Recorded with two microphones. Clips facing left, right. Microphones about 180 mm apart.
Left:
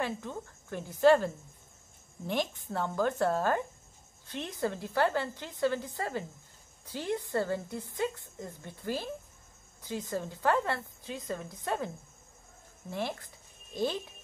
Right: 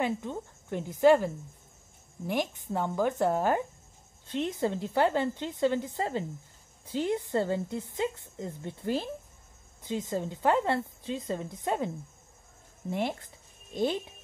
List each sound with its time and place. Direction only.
0.0 s a woman's voice: 20° right (ahead or behind)
12.9 s a woman's voice: 20° right (ahead or behind)